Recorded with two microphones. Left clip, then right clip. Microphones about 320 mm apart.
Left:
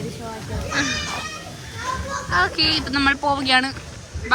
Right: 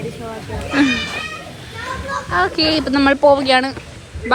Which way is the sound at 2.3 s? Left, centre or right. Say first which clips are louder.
Right 3 dB; centre.